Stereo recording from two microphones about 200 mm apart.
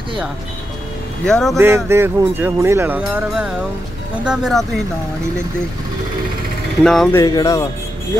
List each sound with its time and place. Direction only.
1.2 s speech: 5° left (ahead or behind)
1.6 s speech: 10° right (ahead or behind)
6.8 s speech: centre (ahead or behind)
7.2 s speech: 15° left (ahead or behind)